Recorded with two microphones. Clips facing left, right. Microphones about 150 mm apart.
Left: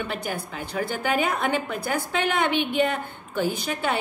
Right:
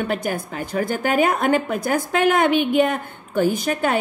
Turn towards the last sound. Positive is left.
turn(degrees=-50)  # may be behind; listen again after turning